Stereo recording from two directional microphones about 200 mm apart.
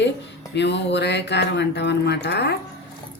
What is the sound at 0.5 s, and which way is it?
Speech, 60° left (ahead or behind).